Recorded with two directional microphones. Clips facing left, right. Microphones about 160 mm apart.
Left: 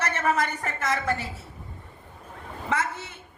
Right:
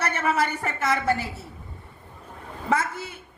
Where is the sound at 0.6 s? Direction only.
30° right (ahead or behind).